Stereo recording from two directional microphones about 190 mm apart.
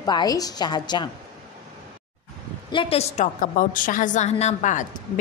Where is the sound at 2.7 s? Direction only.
30° left (ahead or behind).